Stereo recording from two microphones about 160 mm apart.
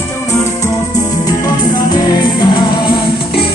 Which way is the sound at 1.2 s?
25° left (ahead or behind).